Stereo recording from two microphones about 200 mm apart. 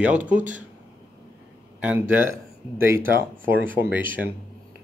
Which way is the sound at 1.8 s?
10° right (ahead or behind).